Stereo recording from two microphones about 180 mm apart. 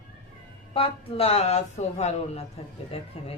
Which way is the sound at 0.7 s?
30° left (ahead or behind).